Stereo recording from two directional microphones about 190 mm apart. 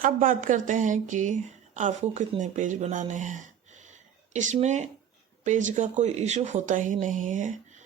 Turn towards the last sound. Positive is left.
turn(degrees=-40)  # may be behind; listen again after turning